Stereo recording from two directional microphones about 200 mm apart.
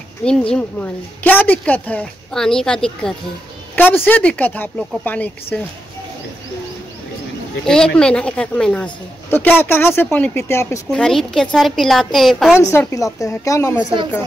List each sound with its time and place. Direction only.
0.2 s a woman's voice: 5° left (ahead or behind)
7.6 s a woman's voice: 5° left (ahead or behind)
12.7 s speech: 15° left (ahead or behind)